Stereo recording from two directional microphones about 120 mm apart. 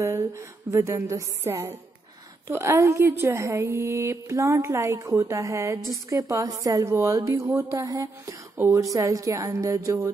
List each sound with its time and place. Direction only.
0.0 s speech: 25° right (ahead or behind)